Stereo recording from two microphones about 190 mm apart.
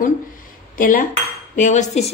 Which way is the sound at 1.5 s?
40° left (ahead or behind).